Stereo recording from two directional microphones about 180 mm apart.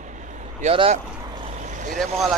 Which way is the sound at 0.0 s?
45° right (ahead or behind).